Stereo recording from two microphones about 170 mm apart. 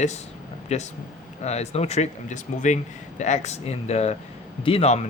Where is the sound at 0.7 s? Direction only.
40° left (ahead or behind).